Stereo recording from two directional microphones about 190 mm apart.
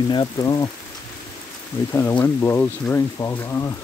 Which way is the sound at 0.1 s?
20° left (ahead or behind).